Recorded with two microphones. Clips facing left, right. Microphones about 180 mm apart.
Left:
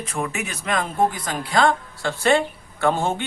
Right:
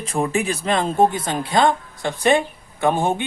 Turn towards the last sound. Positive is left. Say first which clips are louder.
# right 2 dB
turn(degrees=-15)  # may be behind; listen again after turning